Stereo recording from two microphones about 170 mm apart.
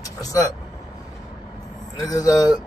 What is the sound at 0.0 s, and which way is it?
Speech, 20° left (ahead or behind).